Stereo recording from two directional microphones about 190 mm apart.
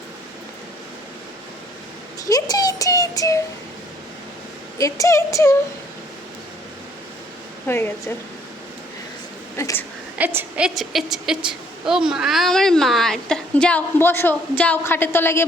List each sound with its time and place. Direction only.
2.2 s speech: 20° left (ahead or behind)
4.8 s speech: 15° left (ahead or behind)
7.7 s speech: 10° left (ahead or behind)
9.6 s speech: 15° left (ahead or behind)
10.2 s a woman's voice: 10° right (ahead or behind); by 15.4 s 10° left (ahead or behind)